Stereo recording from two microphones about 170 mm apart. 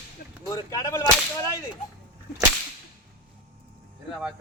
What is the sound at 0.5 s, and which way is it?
Speech, 20° left (ahead or behind).